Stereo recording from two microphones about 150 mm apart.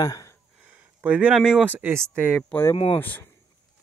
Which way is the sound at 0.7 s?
10° right (ahead or behind).